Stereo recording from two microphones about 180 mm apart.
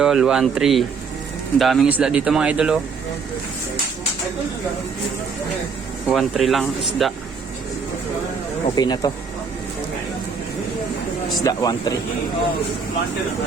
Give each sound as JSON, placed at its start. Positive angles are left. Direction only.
{"t": 0.0, "sound": "speech", "side_deg": 0}
{"t": 6.1, "sound": "speech", "side_deg": 0}
{"t": 8.7, "sound": "speech", "side_deg": 20}
{"t": 11.4, "sound": "speech", "side_deg": 20}